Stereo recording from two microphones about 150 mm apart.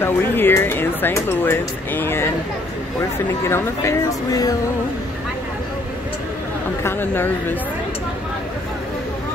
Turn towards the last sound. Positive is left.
turn(degrees=15)  # may be behind; listen again after turning